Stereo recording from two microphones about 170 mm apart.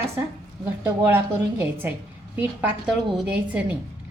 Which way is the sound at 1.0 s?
15° right (ahead or behind).